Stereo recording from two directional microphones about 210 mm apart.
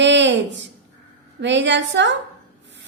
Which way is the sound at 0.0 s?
60° right (ahead or behind).